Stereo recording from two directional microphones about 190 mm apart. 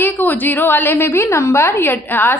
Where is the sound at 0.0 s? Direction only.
10° left (ahead or behind).